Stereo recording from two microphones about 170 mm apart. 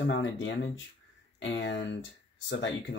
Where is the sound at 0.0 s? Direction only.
90° left.